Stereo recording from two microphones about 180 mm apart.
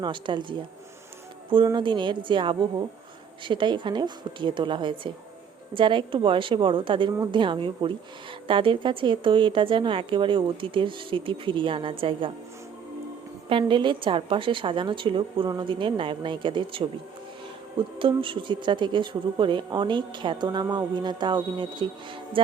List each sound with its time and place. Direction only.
0.0 s speech: 25° right (ahead or behind)
13.5 s speech: 30° right (ahead or behind)